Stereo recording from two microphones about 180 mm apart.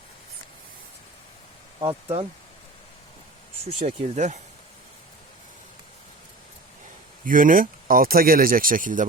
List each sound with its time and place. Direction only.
1.8 s speech: 30° right (ahead or behind)
3.6 s speech: 40° right (ahead or behind)
7.3 s speech: 50° right (ahead or behind)